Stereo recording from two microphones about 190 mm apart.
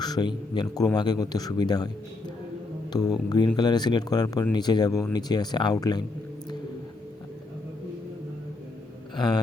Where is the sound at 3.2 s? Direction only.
25° left (ahead or behind).